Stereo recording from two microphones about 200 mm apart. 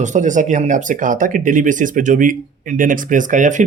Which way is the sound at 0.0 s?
40° right (ahead or behind).